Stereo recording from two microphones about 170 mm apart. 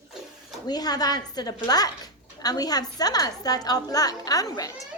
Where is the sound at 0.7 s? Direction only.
25° left (ahead or behind).